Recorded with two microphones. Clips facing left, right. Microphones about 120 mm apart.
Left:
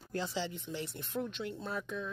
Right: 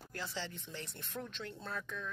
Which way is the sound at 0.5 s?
5° left (ahead or behind).